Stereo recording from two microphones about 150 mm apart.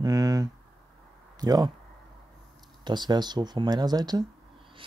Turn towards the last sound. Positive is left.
turn(degrees=-30)  # may be behind; listen again after turning